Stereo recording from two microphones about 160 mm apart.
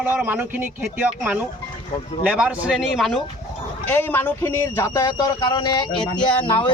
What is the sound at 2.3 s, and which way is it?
Speech, 5° right (ahead or behind).